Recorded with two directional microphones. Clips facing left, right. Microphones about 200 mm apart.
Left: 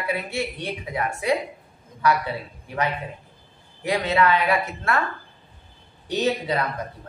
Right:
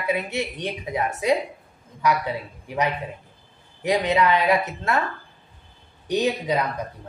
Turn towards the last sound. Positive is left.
turn(degrees=-15)  # may be behind; listen again after turning